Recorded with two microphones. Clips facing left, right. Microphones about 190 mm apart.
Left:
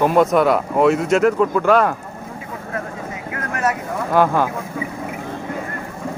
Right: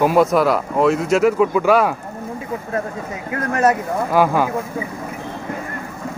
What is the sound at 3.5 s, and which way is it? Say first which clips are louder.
Speech: right 5 dB; 35° right (ahead or behind).